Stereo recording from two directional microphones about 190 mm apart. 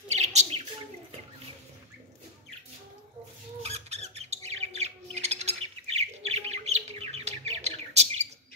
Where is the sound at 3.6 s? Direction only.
35° right (ahead or behind).